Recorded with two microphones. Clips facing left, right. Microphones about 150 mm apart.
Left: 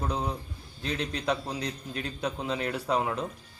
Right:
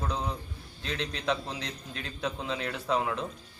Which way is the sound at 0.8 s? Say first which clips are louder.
Left 3 dB; 40° left (ahead or behind).